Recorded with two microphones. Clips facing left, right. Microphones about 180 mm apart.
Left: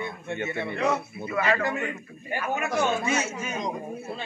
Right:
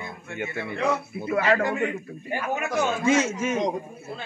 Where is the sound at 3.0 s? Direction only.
90° right.